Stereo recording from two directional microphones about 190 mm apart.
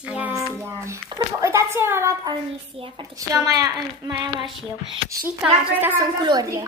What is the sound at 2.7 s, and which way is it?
A child's voice, 25° right (ahead or behind).